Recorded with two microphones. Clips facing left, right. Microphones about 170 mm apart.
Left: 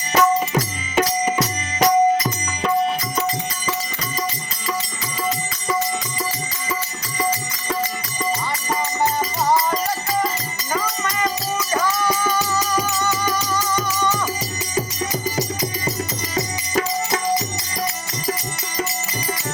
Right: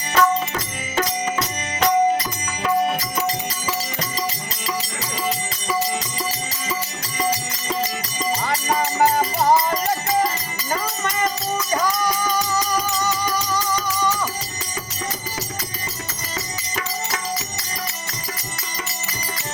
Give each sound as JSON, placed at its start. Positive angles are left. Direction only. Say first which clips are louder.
{"t": 0.2, "sound": "music", "louder": "left 2 dB", "side_deg": 15}
{"t": 11.7, "sound": "music", "louder": "left 1 dB", "side_deg": -15}